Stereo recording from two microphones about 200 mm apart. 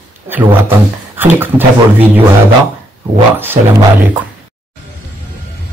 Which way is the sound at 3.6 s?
35° right (ahead or behind).